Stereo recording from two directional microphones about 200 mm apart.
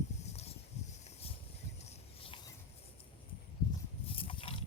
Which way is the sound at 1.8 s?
30° left (ahead or behind).